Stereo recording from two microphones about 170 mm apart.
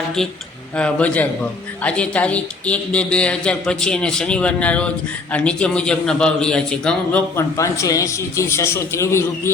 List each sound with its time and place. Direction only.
0.2 s a man's voice: 5° left (ahead or behind)
7.3 s a man's voice: 20° left (ahead or behind)